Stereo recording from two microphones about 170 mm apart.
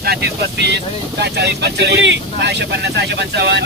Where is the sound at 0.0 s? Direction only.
70° right (ahead or behind).